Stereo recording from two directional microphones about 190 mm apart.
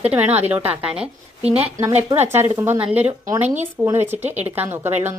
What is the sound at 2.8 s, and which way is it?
Speech, 30° right (ahead or behind).